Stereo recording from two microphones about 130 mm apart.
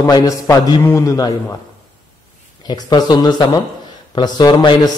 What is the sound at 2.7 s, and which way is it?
A man's voice, 30° left (ahead or behind).